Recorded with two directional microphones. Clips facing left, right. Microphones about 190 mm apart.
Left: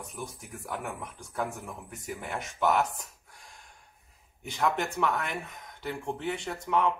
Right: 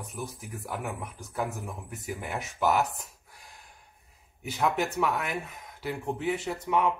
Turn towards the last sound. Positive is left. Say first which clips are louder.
# right 1 dB
turn(degrees=-5)  # may be behind; listen again after turning